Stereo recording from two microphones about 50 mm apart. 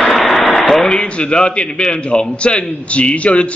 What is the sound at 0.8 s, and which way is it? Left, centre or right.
A man's voice, left.